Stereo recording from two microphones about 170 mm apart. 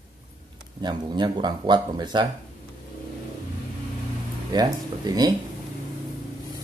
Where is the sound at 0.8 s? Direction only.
25° right (ahead or behind).